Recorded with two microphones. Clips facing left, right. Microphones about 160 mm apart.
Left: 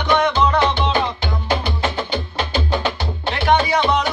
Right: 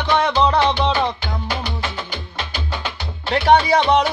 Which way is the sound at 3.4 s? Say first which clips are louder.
Right 2 dB; 35° right (ahead or behind).